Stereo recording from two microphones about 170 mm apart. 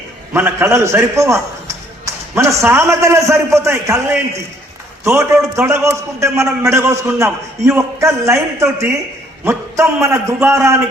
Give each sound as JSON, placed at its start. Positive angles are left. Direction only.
{"t": 0.3, "sound": "a man's voice", "side_deg": -15}
{"t": 5.0, "sound": "a man's voice", "side_deg": -15}